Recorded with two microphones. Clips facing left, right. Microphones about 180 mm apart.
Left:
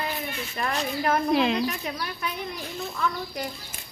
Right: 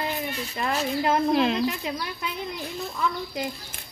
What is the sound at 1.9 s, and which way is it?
Child singing, 20° right (ahead or behind).